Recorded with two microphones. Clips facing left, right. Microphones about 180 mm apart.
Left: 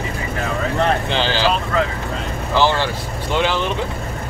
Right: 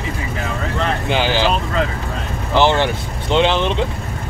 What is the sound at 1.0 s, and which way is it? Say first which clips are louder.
Speech: right 2 dB; 15° right (ahead or behind).